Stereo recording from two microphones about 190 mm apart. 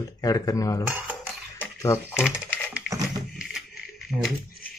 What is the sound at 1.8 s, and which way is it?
Speech, 15° left (ahead or behind).